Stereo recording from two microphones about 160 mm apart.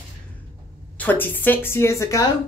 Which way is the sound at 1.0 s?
10° left (ahead or behind).